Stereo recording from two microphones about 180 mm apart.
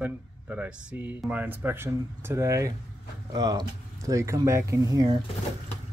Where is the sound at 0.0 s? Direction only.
10° right (ahead or behind).